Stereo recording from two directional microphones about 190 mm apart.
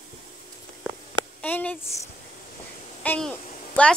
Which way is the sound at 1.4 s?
10° left (ahead or behind).